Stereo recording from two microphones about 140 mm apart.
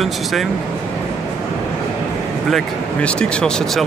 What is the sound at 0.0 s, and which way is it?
Speech, centre (ahead or behind).